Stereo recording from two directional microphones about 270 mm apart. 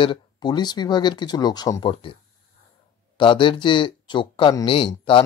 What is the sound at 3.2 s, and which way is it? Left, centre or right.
Speech, centre.